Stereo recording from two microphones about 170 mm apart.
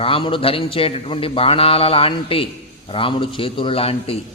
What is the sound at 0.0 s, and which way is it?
A man's voice, 30° left (ahead or behind).